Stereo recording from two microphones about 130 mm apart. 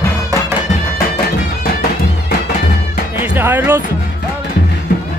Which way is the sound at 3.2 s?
15° right (ahead or behind).